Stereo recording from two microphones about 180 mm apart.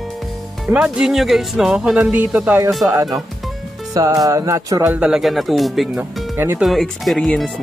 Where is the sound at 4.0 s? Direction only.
20° right (ahead or behind).